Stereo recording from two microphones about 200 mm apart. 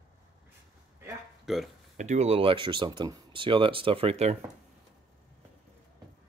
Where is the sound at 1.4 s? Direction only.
Centre (ahead or behind).